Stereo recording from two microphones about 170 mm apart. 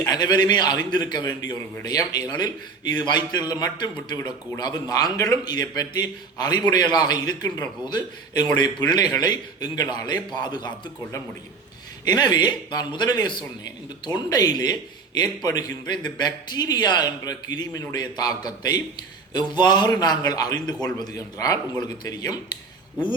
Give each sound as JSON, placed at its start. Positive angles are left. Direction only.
{"t": 0.0, "sound": "a man's voice", "side_deg": 25}
{"t": 12.0, "sound": "a man's voice", "side_deg": 25}